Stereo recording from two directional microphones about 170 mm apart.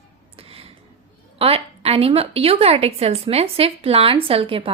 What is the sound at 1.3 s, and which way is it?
A woman's voice, 35° right (ahead or behind).